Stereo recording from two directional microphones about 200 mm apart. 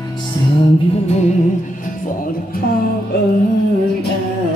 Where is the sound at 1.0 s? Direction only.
35° left (ahead or behind).